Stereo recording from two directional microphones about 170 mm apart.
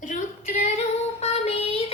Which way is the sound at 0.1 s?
45° left (ahead or behind).